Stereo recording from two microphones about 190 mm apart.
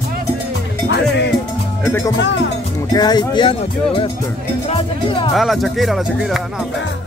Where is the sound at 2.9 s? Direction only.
20° left (ahead or behind).